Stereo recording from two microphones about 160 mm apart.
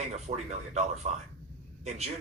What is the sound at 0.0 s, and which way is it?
Speech, 45° right (ahead or behind).